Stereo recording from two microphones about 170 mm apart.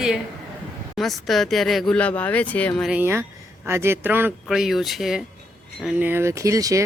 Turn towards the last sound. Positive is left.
turn(degrees=-20)  # may be behind; listen again after turning